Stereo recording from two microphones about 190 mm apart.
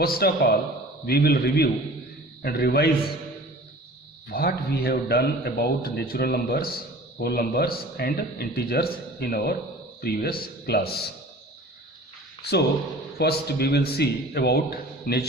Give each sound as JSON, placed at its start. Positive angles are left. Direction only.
{"t": 0.0, "sound": "a man's voice", "side_deg": 55}
{"t": 4.3, "sound": "a man's voice", "side_deg": 55}
{"t": 12.4, "sound": "a man's voice", "side_deg": 60}